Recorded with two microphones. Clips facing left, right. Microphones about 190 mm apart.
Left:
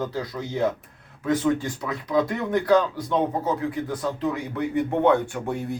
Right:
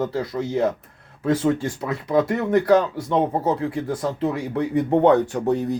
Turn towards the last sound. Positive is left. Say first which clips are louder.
# right 7 dB
turn(degrees=-40)  # may be behind; listen again after turning